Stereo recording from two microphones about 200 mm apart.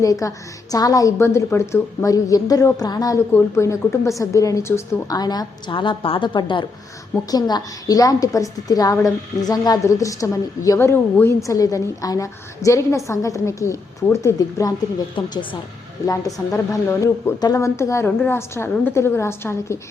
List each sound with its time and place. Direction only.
0.0 s a woman's voice: 15° left (ahead or behind)